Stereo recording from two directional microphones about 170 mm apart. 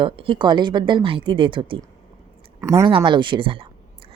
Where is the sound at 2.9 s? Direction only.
30° right (ahead or behind).